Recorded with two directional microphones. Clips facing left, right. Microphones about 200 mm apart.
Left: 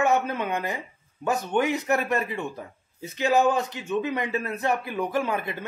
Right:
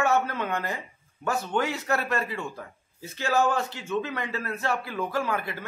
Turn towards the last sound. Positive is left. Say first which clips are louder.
# left 2 dB
turn(degrees=20)  # may be behind; listen again after turning